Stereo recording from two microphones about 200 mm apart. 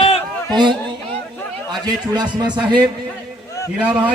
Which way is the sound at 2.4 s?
20° right (ahead or behind).